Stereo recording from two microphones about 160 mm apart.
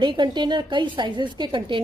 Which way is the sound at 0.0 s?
30° right (ahead or behind).